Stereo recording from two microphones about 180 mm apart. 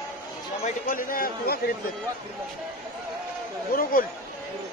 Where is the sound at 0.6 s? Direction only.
50° left (ahead or behind).